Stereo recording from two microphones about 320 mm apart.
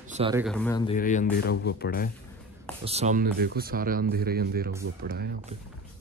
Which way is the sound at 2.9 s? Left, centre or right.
Right.